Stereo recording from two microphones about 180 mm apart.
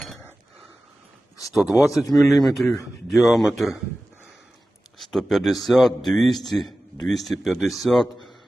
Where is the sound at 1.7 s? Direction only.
15° left (ahead or behind).